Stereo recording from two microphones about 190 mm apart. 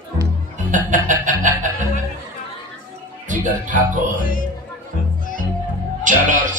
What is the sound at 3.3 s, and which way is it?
Speech, 45° right (ahead or behind).